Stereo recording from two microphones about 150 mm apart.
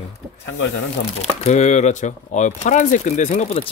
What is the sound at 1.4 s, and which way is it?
Speech, 50° left (ahead or behind).